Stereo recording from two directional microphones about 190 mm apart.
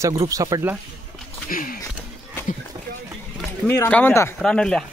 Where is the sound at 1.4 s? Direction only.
45° left (ahead or behind).